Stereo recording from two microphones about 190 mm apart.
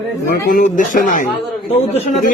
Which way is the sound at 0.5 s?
45° left (ahead or behind).